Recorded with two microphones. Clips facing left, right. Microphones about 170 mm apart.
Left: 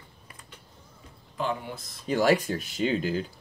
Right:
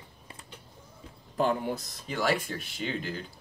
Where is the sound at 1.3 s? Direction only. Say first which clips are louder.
Right 4 dB; 45° right (ahead or behind).